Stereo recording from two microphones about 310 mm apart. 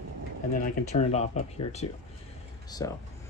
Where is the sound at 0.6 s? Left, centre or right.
Left.